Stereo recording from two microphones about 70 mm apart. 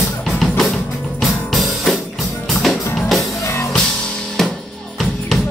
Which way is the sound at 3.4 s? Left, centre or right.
Left.